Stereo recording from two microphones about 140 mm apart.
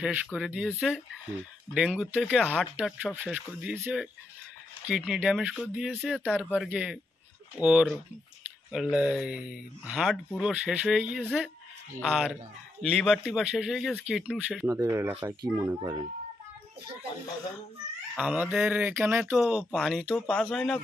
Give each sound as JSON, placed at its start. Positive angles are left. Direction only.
{"t": 0.0, "sound": "speech", "side_deg": -10}
{"t": 14.8, "sound": "speech", "side_deg": -15}
{"t": 18.1, "sound": "speech", "side_deg": -10}
{"t": 19.3, "sound": "speech", "side_deg": 0}